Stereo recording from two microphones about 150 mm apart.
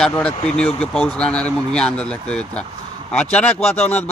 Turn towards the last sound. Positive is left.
turn(degrees=10)  # may be behind; listen again after turning